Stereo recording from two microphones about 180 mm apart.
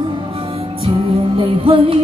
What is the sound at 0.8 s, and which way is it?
Music, 30° right (ahead or behind).